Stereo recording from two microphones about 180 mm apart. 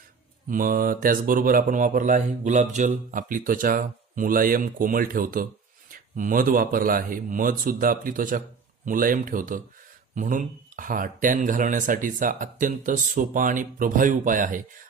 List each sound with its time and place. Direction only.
0.5 s speech: 50° right (ahead or behind)